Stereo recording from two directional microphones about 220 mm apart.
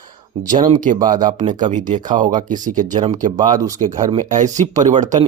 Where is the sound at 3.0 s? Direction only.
20° right (ahead or behind).